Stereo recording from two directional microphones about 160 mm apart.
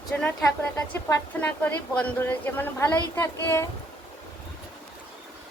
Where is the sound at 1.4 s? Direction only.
10° left (ahead or behind).